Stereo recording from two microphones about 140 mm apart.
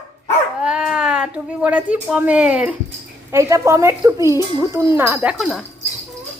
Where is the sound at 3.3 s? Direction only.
20° right (ahead or behind).